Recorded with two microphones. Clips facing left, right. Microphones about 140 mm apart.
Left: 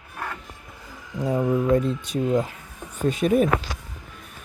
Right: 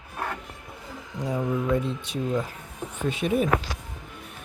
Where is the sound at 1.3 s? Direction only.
40° left (ahead or behind).